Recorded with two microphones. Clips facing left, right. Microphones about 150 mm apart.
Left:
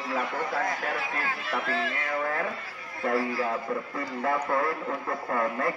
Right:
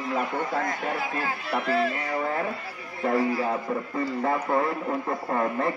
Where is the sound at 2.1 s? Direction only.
20° right (ahead or behind).